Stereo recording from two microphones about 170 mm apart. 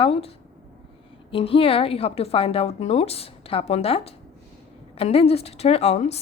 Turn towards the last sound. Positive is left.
turn(degrees=40)  # may be behind; listen again after turning